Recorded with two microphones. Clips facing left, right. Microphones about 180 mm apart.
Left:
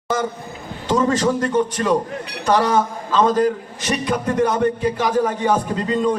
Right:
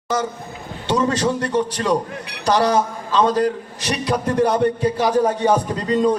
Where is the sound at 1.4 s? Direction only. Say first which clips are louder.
Left 2 dB; 35° right (ahead or behind).